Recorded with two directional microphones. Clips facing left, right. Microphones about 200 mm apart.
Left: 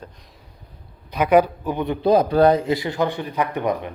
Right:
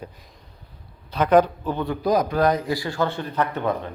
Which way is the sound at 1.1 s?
10° left (ahead or behind).